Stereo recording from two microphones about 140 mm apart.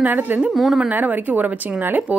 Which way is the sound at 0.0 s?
15° right (ahead or behind).